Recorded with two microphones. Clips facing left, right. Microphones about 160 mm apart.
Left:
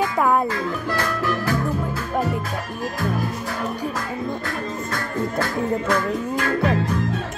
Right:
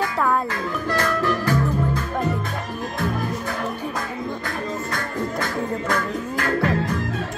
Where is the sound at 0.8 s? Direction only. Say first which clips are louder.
Right 5 dB; 10° left (ahead or behind).